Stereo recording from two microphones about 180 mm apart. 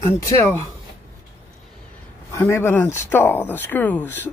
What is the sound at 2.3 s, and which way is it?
Speech, 15° left (ahead or behind).